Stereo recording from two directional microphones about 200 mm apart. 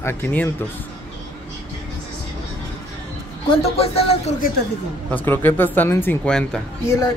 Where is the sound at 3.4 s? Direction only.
30° left (ahead or behind).